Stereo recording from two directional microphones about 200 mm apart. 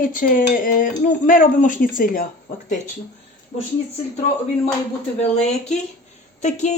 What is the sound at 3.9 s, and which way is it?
Speech, 35° left (ahead or behind).